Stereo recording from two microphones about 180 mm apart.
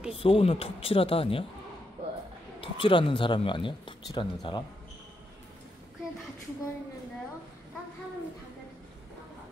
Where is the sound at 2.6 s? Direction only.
30° left (ahead or behind).